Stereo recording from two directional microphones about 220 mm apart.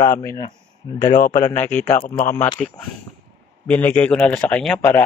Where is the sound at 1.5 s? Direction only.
10° left (ahead or behind).